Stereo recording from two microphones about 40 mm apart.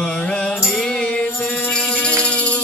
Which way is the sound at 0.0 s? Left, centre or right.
Left.